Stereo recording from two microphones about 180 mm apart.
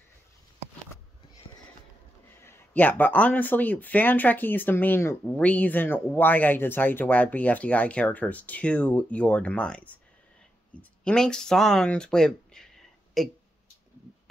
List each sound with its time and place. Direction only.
2.4 s speech: 10° left (ahead or behind)